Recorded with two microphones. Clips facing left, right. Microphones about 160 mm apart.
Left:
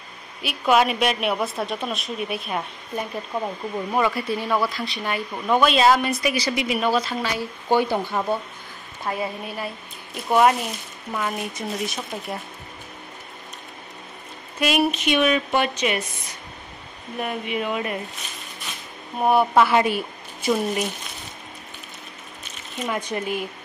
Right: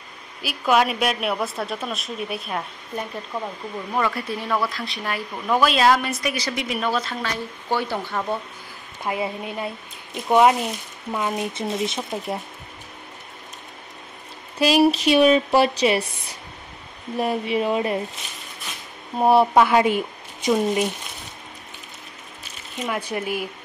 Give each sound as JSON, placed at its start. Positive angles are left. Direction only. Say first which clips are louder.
{"t": 0.4, "sound": "speech", "louder": "left 1 dB", "side_deg": 0}
{"t": 9.0, "sound": "speech", "louder": "right 1 dB", "side_deg": -20}
{"t": 14.6, "sound": "a woman's voice", "louder": "right 4 dB", "side_deg": -30}
{"t": 17.2, "sound": "a woman's voice", "louder": "right 4 dB", "side_deg": -35}
{"t": 19.1, "sound": "speech", "louder": "right 3 dB", "side_deg": -30}
{"t": 19.8, "sound": "speech", "louder": "right 2 dB", "side_deg": -20}
{"t": 22.8, "sound": "speech", "louder": "even", "side_deg": -10}